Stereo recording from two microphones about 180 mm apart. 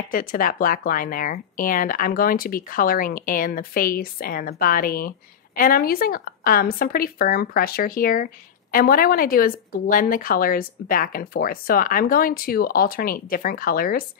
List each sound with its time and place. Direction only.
0.1 s a woman's voice: 50° left (ahead or behind)